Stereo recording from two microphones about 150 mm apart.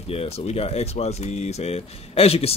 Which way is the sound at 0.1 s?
40° left (ahead or behind).